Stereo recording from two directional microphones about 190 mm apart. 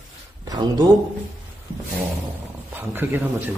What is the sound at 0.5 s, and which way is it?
Speech, 20° right (ahead or behind).